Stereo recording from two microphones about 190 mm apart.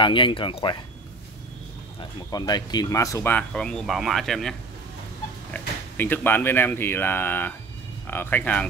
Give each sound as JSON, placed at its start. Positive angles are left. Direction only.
{"t": 0.0, "sound": "speech", "side_deg": 25}
{"t": 2.1, "sound": "speech", "side_deg": 20}